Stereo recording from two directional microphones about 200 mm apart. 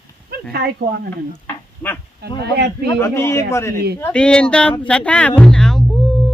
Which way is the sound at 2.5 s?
55° right (ahead or behind).